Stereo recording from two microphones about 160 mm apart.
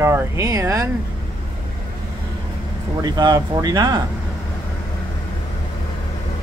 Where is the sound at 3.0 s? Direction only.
25° right (ahead or behind).